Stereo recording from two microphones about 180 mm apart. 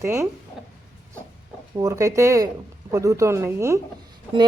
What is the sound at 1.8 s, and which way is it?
Speech, 20° right (ahead or behind).